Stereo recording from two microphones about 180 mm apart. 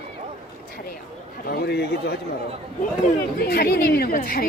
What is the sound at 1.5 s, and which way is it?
Speech, 65° left (ahead or behind).